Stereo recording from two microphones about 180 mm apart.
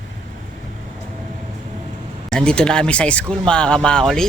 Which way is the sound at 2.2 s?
5° left (ahead or behind).